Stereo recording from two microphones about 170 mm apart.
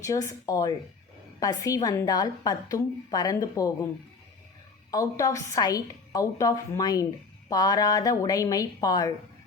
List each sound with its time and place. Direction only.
0.0 s a woman's voice: 20° left (ahead or behind)
4.9 s a woman's voice: 20° left (ahead or behind)